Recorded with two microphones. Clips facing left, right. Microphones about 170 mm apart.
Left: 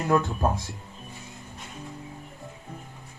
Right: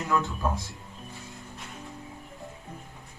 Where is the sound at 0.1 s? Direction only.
50° left (ahead or behind).